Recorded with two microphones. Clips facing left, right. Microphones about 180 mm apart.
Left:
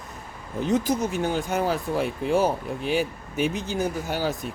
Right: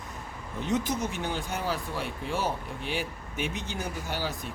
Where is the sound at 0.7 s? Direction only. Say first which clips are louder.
Left 5 dB; 45° left (ahead or behind).